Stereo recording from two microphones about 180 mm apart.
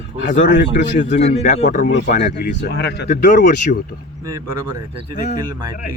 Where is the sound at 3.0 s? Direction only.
45° left (ahead or behind).